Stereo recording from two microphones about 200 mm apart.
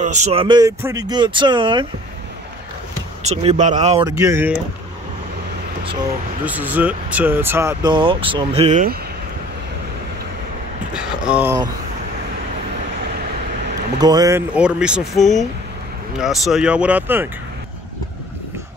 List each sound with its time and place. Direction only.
0.0 s speech: 35° right (ahead or behind)
3.2 s speech: 35° right (ahead or behind)
4.0 s speech: 15° right (ahead or behind)
6.4 s speech: 10° right (ahead or behind); by 8.9 s 35° right (ahead or behind)
10.9 s a sound: 5° right (ahead or behind)
13.9 s speech: 20° right (ahead or behind)
14.5 s speech: 5° right (ahead or behind)